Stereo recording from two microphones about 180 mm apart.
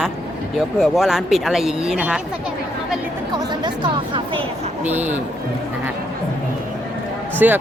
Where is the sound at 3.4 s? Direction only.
25° right (ahead or behind).